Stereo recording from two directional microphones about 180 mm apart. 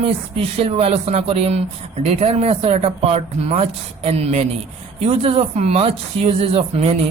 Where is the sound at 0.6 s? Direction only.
35° right (ahead or behind).